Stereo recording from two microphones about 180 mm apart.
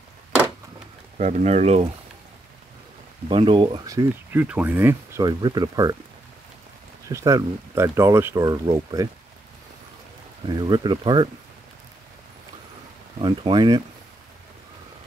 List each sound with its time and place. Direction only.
1.1 s speech: 40° right (ahead or behind)
3.3 s speech: 30° right (ahead or behind); by 5.2 s 10° right (ahead or behind)
5.2 s speech: 20° right (ahead or behind)
7.1 s speech: 15° right (ahead or behind)
10.4 s speech: 25° right (ahead or behind)
13.2 s speech: 25° right (ahead or behind)